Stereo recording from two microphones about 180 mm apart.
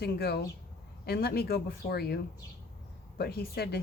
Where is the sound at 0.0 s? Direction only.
60° left (ahead or behind).